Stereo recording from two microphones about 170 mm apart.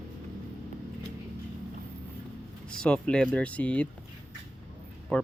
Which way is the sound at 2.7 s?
5° left (ahead or behind).